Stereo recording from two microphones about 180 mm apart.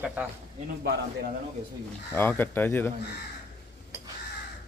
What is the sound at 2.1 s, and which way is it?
Speech, 10° left (ahead or behind).